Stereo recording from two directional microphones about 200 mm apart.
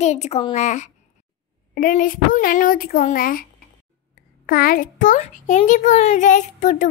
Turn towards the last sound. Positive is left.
turn(degrees=40)  # may be behind; listen again after turning